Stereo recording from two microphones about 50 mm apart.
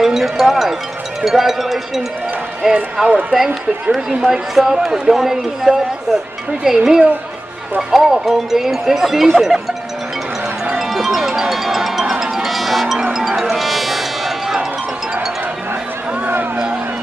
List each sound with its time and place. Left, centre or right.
0.0 s speech: centre
3.1 s speech: right
4.2 s speech: centre
10.8 s music: centre